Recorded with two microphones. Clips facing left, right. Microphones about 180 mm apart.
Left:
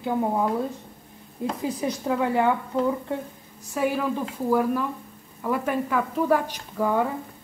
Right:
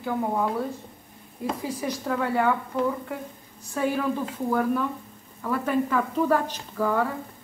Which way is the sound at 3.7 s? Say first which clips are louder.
Left 1 dB; 10° left (ahead or behind).